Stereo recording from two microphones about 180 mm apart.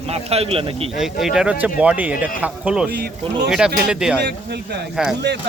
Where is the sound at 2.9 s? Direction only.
60° right (ahead or behind).